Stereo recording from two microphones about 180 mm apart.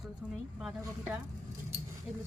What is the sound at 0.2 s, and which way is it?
Speech, 5° right (ahead or behind).